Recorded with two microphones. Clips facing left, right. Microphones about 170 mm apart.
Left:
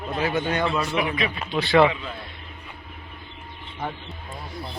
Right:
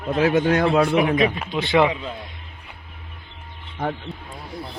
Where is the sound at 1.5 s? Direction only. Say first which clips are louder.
Left 2 dB; 20° right (ahead or behind).